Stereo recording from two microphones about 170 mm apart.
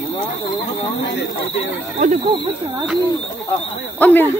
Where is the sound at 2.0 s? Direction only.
50° right (ahead or behind).